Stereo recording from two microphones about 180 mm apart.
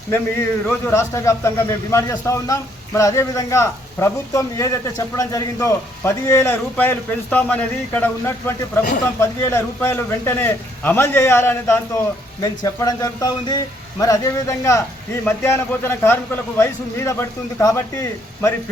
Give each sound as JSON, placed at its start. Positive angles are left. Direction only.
{"t": 0.1, "sound": "a man's voice", "side_deg": 15}